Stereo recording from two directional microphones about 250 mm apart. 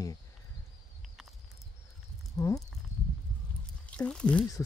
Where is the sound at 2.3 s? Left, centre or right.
Centre.